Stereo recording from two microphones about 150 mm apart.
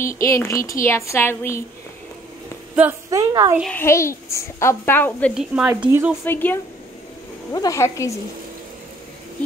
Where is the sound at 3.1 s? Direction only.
25° right (ahead or behind).